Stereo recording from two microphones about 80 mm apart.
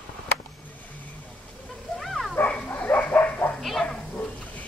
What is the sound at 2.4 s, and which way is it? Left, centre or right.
Bow-wow, left.